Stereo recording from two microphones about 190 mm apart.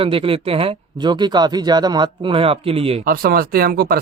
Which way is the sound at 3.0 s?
50° right (ahead or behind).